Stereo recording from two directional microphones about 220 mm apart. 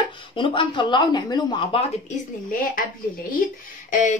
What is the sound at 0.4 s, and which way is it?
Speech, 20° left (ahead or behind).